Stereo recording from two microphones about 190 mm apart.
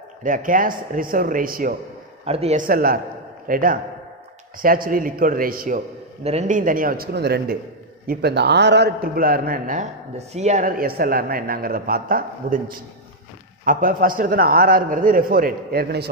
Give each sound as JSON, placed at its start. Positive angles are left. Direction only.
{"t": 0.2, "sound": "a man's voice", "side_deg": -45}
{"t": 2.2, "sound": "a man's voice", "side_deg": -30}
{"t": 2.6, "sound": "a man's voice", "side_deg": -50}
{"t": 6.2, "sound": "a man's voice", "side_deg": -35}